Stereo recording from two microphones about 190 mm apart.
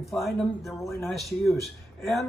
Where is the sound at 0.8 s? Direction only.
15° left (ahead or behind).